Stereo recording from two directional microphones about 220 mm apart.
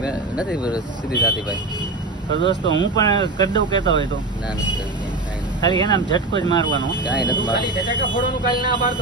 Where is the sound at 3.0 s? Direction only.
20° left (ahead or behind).